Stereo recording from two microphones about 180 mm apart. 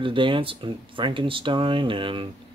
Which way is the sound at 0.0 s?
30° right (ahead or behind).